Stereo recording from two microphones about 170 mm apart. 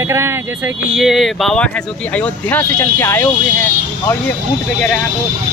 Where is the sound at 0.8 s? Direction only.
5° right (ahead or behind).